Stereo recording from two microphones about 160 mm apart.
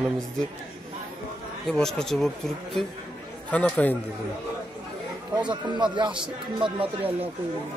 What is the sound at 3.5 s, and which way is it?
Speech, 10° left (ahead or behind).